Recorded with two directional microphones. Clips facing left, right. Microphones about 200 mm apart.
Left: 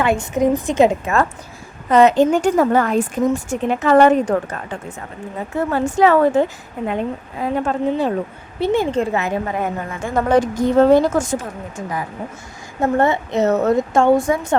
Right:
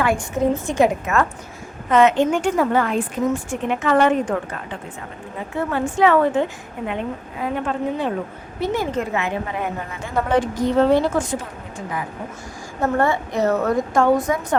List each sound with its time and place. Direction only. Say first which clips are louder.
0.0 s a woman's voice: left 3 dB; 20° left (ahead or behind)
1.9 s a woman's voice: left 3 dB; 35° left (ahead or behind)
7.4 s a woman's voice: left 4 dB; 40° left (ahead or behind)
8.6 s a woman's voice: left 5 dB; 30° left (ahead or behind); by 11.4 s 45° left (ahead or behind)
12.8 s a woman's voice: left 3 dB; 20° left (ahead or behind)